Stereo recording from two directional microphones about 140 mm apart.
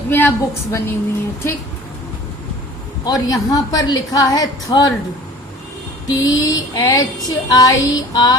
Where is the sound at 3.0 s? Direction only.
25° left (ahead or behind).